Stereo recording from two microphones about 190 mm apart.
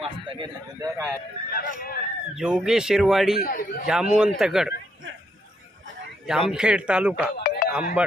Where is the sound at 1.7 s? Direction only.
50° left (ahead or behind).